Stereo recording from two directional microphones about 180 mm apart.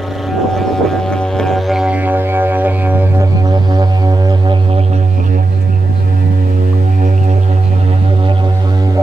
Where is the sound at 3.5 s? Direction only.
20° right (ahead or behind).